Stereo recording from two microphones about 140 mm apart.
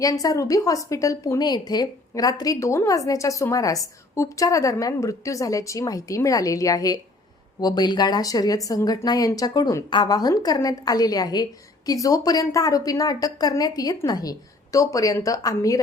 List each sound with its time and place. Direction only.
0.0 s a woman's voice: 25° left (ahead or behind)